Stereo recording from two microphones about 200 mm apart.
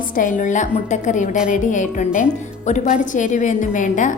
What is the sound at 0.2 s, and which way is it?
A woman's voice, 40° left (ahead or behind).